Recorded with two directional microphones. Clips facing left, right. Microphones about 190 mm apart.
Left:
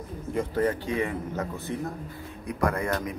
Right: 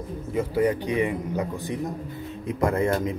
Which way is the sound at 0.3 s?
10° right (ahead or behind).